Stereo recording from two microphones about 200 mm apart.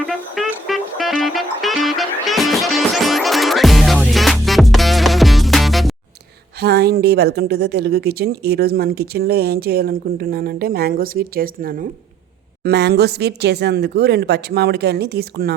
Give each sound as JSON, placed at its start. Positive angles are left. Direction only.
{"t": 0.1, "sound": "music", "side_deg": 0}
{"t": 6.6, "sound": "a woman's voice", "side_deg": -55}